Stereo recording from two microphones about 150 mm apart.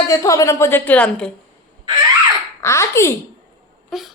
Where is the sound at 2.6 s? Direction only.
20° left (ahead or behind).